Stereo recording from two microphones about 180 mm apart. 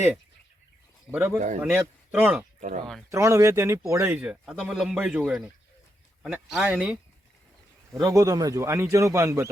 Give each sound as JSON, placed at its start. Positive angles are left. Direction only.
{"t": 1.1, "sound": "speech", "side_deg": -5}
{"t": 2.6, "sound": "speech", "side_deg": -45}
{"t": 3.1, "sound": "speech", "side_deg": -15}
{"t": 8.0, "sound": "speech", "side_deg": -20}